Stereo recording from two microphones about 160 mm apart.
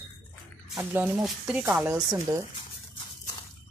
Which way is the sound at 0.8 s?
10° right (ahead or behind).